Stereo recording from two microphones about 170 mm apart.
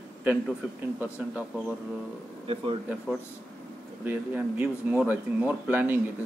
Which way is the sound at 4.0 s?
10° right (ahead or behind).